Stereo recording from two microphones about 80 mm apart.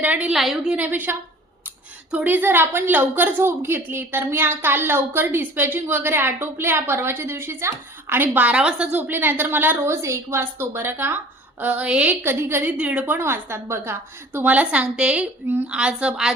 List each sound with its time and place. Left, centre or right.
0.0 s a woman's voice: centre
0.3 s a woman's voice: centre
0.7 s a woman's voice: right
2.1 s a woman's voice: right
11.6 s a woman's voice: centre
12.2 s a woman's voice: right
12.7 s a woman's voice: centre
13.1 s a woman's voice: right
14.3 s a woman's voice: centre